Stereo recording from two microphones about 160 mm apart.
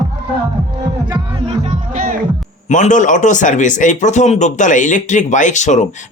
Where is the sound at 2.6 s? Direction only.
50° left (ahead or behind).